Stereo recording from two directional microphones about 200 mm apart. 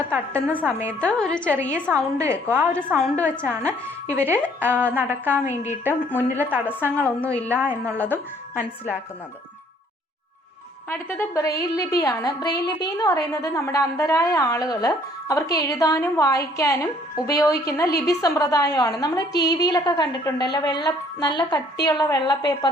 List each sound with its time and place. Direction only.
0.1 s a woman's voice: 10° right (ahead or behind)
0.9 s a woman's voice: 5° left (ahead or behind)
1.9 s a woman's voice: 15° right (ahead or behind)
2.7 s a woman's voice: 5° left (ahead or behind)
3.2 s a woman's voice: 10° right (ahead or behind)
6.9 s a woman's voice: 5° left (ahead or behind)
7.4 s a woman's voice: 10° right (ahead or behind)
7.9 s a woman's voice: 10° left (ahead or behind)
10.8 s a woman's voice: 10° left (ahead or behind)